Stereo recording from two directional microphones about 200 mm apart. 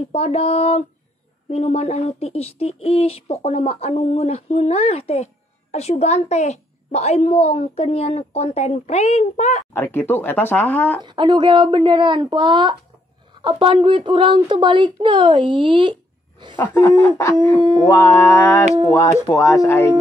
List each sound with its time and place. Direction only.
0.1 s speech: 30° left (ahead or behind)
9.8 s speech: 10° left (ahead or behind)
11.0 s a woman's voice: 20° right (ahead or behind)
16.5 s speech: 10° left (ahead or behind)